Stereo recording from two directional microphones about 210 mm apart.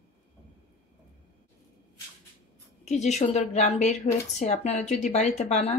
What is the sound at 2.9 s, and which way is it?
A woman's voice, 35° left (ahead or behind).